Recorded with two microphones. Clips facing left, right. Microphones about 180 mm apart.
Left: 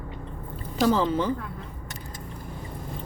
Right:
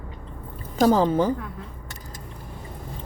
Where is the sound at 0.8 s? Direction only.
45° right (ahead or behind).